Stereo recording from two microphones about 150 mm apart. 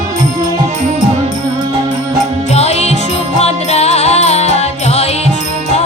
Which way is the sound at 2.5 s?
45° left (ahead or behind).